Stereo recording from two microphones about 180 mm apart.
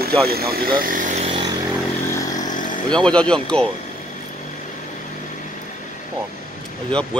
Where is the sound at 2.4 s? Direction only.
45° left (ahead or behind).